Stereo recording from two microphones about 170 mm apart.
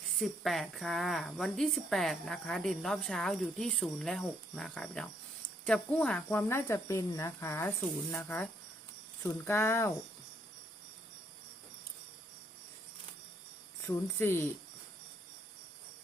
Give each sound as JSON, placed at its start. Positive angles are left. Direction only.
{"t": 0.2, "sound": "a woman's voice", "side_deg": 0}
{"t": 13.8, "sound": "speech", "side_deg": 15}